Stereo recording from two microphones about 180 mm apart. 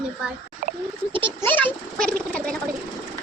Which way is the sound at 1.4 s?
10° left (ahead or behind).